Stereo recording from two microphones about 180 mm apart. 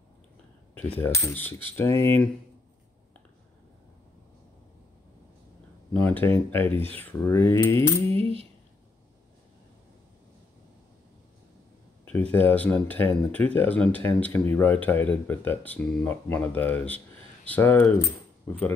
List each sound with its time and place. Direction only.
0.8 s speech: 10° left (ahead or behind)
6.0 s speech: 10° left (ahead or behind)
8.1 s coin: 30° right (ahead or behind)
12.0 s speech: 10° left (ahead or behind)